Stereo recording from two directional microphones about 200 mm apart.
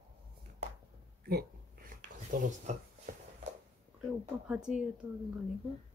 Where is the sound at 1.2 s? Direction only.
50° right (ahead or behind).